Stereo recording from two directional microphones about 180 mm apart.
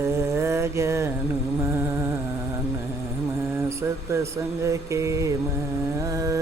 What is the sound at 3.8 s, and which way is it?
Mantra, 15° right (ahead or behind).